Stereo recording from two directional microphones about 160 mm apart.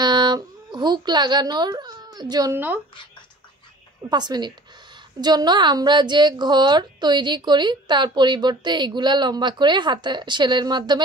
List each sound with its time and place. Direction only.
0.0 s speech: 25° right (ahead or behind)
2.5 s speech: 10° right (ahead or behind)
4.1 s a woman's voice: 25° right (ahead or behind)